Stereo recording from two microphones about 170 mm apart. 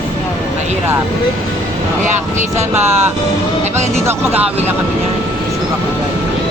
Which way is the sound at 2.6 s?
15° right (ahead or behind).